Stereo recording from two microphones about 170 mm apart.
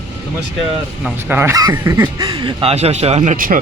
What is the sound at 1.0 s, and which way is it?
Speech, 10° right (ahead or behind).